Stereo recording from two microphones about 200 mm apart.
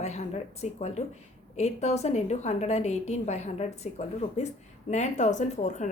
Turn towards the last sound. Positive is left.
turn(degrees=35)  # may be behind; listen again after turning